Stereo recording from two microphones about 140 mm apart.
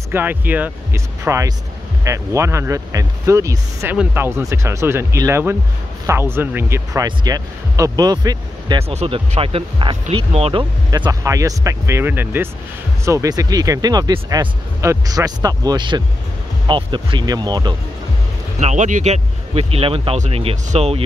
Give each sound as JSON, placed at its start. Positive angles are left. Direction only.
{"t": 0.1, "sound": "speech", "side_deg": -15}
{"t": 8.7, "sound": "speech", "side_deg": -45}
{"t": 10.9, "sound": "speech", "side_deg": -25}
{"t": 18.6, "sound": "speech", "side_deg": -55}